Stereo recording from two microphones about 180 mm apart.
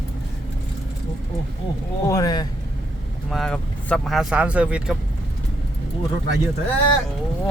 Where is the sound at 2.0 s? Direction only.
20° left (ahead or behind).